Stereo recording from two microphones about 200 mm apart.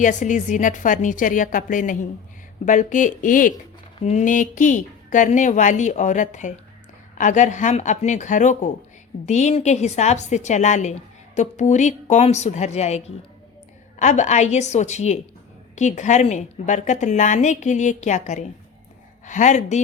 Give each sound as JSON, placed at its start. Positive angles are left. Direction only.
{"t": 0.0, "sound": "a woman's voice", "side_deg": 40}